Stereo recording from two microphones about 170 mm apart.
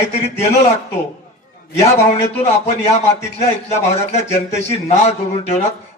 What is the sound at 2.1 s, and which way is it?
A man's voice, 40° left (ahead or behind).